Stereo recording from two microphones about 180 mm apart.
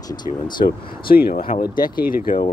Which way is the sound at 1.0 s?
55° left (ahead or behind).